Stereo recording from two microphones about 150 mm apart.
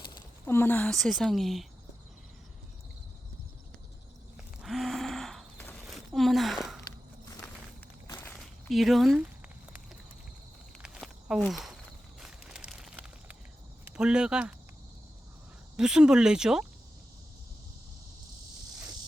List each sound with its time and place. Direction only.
0.0 s a sound: 30° left (ahead or behind)
0.4 s speech: 15° left (ahead or behind)
4.4 s a sound: centre (ahead or behind)
8.0 s walk: 15° left (ahead or behind)
8.7 s speech: centre (ahead or behind)
10.8 s walk: 5° right (ahead or behind)
12.2 s a sound: 5° right (ahead or behind)
13.8 s speech: 5° right (ahead or behind)
15.7 s speech: 5° right (ahead or behind)